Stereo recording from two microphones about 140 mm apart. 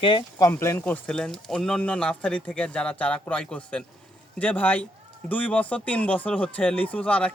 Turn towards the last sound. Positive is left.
turn(degrees=10)  # may be behind; listen again after turning